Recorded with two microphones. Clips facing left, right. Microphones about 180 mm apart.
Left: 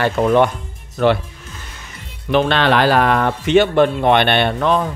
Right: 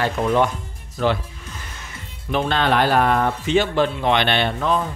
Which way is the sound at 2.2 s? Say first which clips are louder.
Left 5 dB; 75° left (ahead or behind).